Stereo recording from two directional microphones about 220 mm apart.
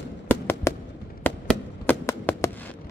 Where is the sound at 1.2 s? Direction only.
10° left (ahead or behind).